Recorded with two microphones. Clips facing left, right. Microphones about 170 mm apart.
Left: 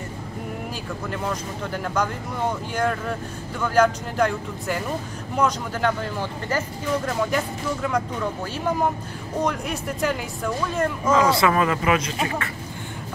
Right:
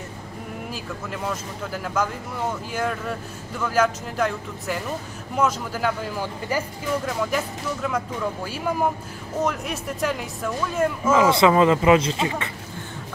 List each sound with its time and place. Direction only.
1.1 s speech: 5° right (ahead or behind)
11.1 s speech: 20° right (ahead or behind)